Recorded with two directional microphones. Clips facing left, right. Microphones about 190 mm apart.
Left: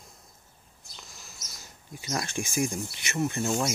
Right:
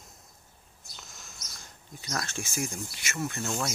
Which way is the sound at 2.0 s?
15° left (ahead or behind).